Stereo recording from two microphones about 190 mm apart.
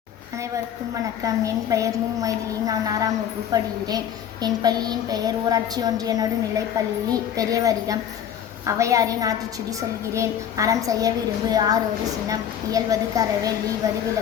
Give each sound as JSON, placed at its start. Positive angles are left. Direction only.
{"t": 1.2, "sound": "a woman's voice", "side_deg": -15}